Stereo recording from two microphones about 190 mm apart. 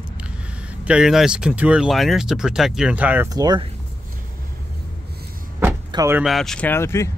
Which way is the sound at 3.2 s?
20° right (ahead or behind).